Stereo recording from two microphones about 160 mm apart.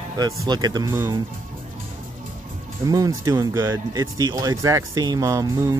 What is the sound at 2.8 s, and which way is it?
Speech, 20° right (ahead or behind).